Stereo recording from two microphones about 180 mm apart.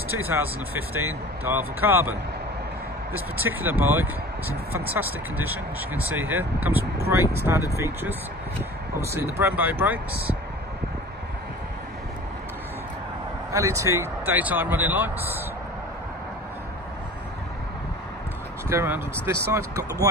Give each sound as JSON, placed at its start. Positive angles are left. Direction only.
{"t": 0.1, "sound": "speech", "side_deg": -10}
{"t": 13.5, "sound": "speech", "side_deg": -15}
{"t": 18.7, "sound": "speech", "side_deg": -15}